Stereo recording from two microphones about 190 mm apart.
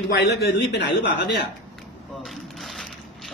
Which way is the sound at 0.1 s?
60° left (ahead or behind).